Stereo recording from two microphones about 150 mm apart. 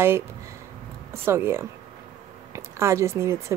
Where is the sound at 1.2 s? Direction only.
15° right (ahead or behind).